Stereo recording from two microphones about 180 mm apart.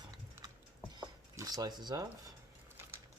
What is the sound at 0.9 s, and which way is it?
Cutlery, 20° right (ahead or behind).